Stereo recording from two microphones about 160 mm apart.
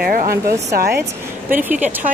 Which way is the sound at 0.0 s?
65° right (ahead or behind).